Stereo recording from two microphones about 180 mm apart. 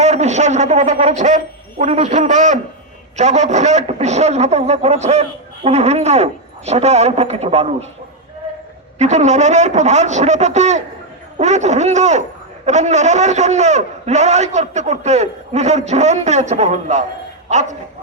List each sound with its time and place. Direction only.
0.0 s a man's voice: 40° right (ahead or behind)
9.0 s a man's voice: 40° right (ahead or behind)